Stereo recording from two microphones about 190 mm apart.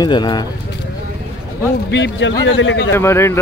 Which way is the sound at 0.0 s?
25° left (ahead or behind).